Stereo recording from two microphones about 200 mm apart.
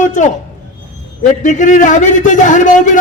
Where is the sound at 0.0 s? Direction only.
40° left (ahead or behind).